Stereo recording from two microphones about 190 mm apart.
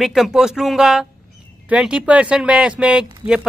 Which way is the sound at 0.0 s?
Centre (ahead or behind).